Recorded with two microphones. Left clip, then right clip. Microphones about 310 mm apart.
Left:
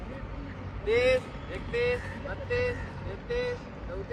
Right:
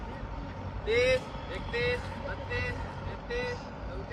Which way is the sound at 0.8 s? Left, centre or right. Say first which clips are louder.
Left 2 dB; centre.